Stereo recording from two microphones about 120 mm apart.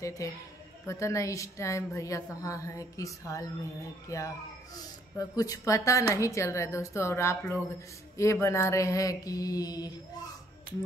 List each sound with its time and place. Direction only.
0.0 s a woman's voice: 25° left (ahead or behind)